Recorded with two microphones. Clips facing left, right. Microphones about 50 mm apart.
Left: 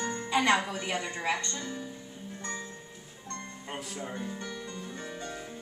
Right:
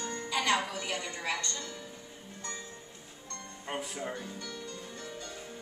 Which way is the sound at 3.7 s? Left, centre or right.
Centre.